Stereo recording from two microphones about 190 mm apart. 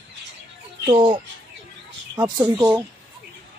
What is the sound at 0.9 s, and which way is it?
Speech, 30° right (ahead or behind).